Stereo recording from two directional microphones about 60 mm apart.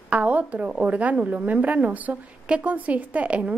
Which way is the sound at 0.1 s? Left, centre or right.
Right.